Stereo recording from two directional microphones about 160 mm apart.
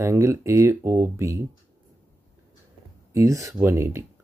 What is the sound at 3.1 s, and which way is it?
Speech, 20° right (ahead or behind).